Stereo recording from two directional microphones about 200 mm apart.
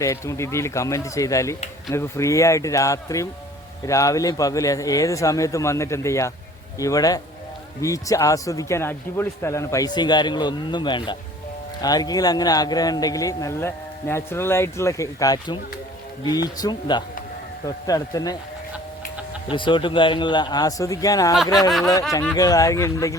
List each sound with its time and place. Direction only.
0.0 s speech: 15° left (ahead or behind)
19.5 s speech: 25° left (ahead or behind)
21.7 s a sound: centre (ahead or behind)
22.1 s speech: 5° left (ahead or behind)
22.4 s speech: 15° left (ahead or behind)